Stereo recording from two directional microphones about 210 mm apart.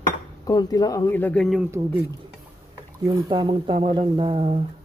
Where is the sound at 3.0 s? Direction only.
20° right (ahead or behind).